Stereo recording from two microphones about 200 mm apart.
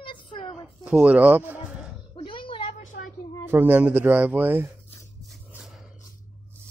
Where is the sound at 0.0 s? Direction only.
25° left (ahead or behind).